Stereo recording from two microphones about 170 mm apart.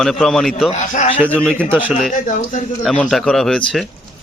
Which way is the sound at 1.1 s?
10° left (ahead or behind).